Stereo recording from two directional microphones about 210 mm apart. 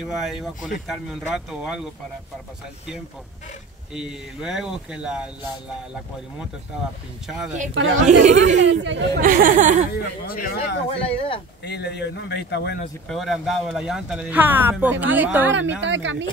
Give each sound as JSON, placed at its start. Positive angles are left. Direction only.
{"t": 0.0, "sound": "speech", "side_deg": 0}
{"t": 3.9, "sound": "speech", "side_deg": -5}
{"t": 7.2, "sound": "speech", "side_deg": 0}
{"t": 7.7, "sound": "speech", "side_deg": -65}
{"t": 8.1, "sound": "speech", "side_deg": -35}
{"t": 8.5, "sound": "speech", "side_deg": -60}
{"t": 9.2, "sound": "speech", "side_deg": -40}
{"t": 9.9, "sound": "speech", "side_deg": 45}
{"t": 10.9, "sound": "speech", "side_deg": 25}
{"t": 11.6, "sound": "speech", "side_deg": 50}
{"t": 13.1, "sound": "speech", "side_deg": 0}
{"t": 15.5, "sound": "speech", "side_deg": -60}